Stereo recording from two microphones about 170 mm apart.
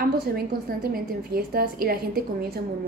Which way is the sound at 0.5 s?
60° right (ahead or behind).